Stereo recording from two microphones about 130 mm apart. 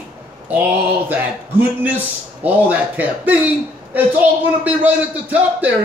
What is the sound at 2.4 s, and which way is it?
A man's voice, 10° right (ahead or behind).